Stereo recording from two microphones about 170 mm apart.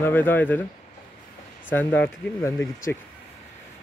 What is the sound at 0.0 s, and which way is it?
Speech, 10° left (ahead or behind).